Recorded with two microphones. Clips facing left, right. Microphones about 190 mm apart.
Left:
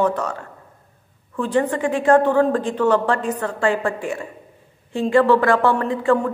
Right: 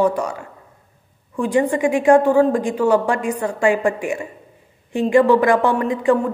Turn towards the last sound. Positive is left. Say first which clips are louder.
# right 1 dB
turn(degrees=-15)  # may be behind; listen again after turning